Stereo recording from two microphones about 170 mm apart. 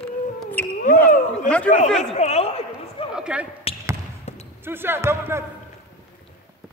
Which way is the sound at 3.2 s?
5° right (ahead or behind).